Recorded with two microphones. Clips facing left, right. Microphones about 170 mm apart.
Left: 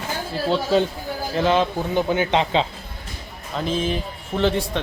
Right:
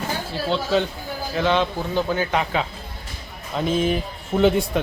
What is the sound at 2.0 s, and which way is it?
Speech, 20° left (ahead or behind).